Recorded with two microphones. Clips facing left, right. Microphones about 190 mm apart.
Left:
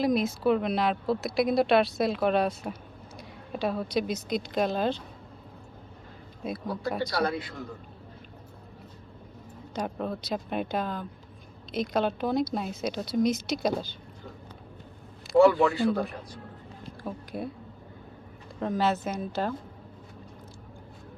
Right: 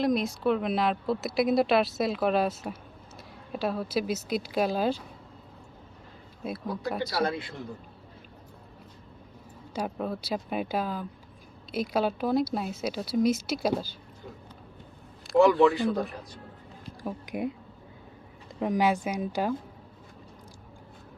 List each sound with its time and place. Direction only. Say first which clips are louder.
0.0 s a woman's voice: left 1 dB; centre (ahead or behind)
6.4 s speech: left 1 dB; 5° right (ahead or behind)
7.1 s a man's voice: even; 25° right (ahead or behind)
9.7 s speech: even; 5° right (ahead or behind)
15.3 s speech: even; centre (ahead or behind)
17.0 s speech: right 3 dB; 15° right (ahead or behind)
18.6 s a woman's voice: right 2 dB; 15° right (ahead or behind)